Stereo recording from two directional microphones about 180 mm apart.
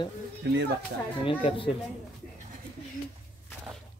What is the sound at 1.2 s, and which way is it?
Speech, 30° left (ahead or behind).